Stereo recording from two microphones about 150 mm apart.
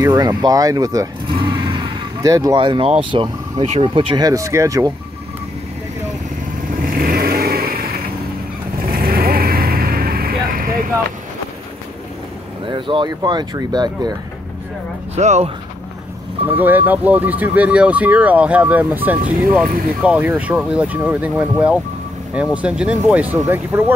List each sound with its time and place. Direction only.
0.0 s speech: 25° right (ahead or behind)
1.3 s vehicle: 35° right (ahead or behind)
2.5 s speech: 35° right (ahead or behind)
4.3 s speech: 20° right (ahead or behind)
6.8 s vehicle: 70° right (ahead or behind)
12.6 s speech: 35° right (ahead or behind)
15.1 s speech: 50° right (ahead or behind)
16.4 s speech: 10° right (ahead or behind)